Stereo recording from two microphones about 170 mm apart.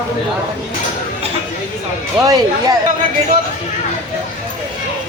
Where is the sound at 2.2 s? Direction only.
20° right (ahead or behind).